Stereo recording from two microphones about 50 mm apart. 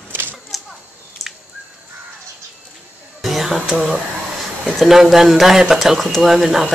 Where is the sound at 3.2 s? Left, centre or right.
Centre.